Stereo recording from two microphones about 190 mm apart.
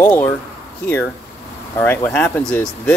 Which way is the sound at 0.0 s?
10° left (ahead or behind).